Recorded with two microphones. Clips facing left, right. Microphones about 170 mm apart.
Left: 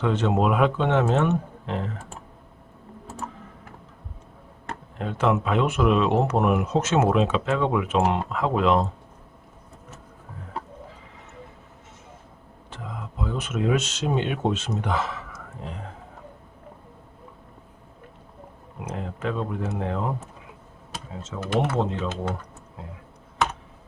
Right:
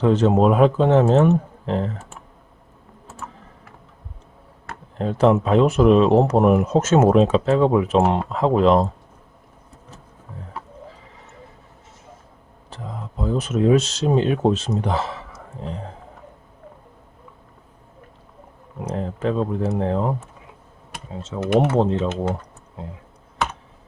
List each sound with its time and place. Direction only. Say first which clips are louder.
0.0 s speech: right 6 dB; 40° right (ahead or behind)
3.2 s typing: left 1 dB; 35° left (ahead or behind)
4.9 s speech: right 7 dB; 35° right (ahead or behind)
12.7 s speech: right 3 dB; 35° right (ahead or behind)
18.9 s speech: right 6 dB; 35° right (ahead or behind)
21.2 s speech: right 6 dB; 30° right (ahead or behind)